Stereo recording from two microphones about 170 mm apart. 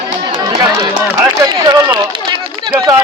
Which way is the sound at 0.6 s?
25° right (ahead or behind).